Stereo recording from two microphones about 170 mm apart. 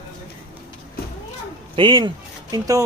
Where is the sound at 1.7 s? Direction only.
30° right (ahead or behind).